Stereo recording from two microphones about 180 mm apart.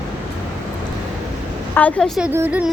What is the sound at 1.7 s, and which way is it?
Speech, 10° left (ahead or behind).